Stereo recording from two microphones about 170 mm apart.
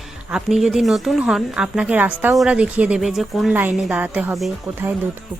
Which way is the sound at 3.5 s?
10° right (ahead or behind).